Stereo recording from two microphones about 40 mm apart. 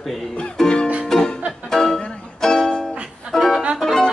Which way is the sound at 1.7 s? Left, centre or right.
Centre.